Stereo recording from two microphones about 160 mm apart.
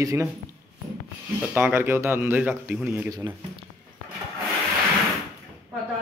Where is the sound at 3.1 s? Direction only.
25° right (ahead or behind).